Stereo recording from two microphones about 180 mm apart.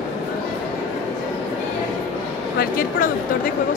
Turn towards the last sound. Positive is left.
turn(degrees=50)  # may be behind; listen again after turning